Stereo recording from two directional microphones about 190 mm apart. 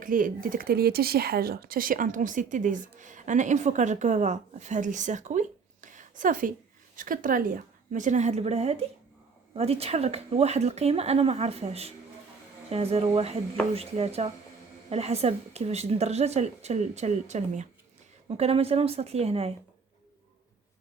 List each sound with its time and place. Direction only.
0.0 s a woman's voice: 45° right (ahead or behind)